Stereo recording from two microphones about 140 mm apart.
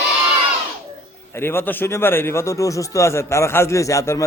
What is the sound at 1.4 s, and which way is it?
Speech, 15° left (ahead or behind).